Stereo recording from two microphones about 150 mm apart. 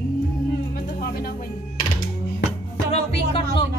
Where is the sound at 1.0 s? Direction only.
90° left.